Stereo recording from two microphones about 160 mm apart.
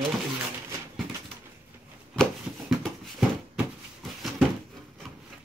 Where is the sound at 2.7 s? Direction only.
Centre (ahead or behind).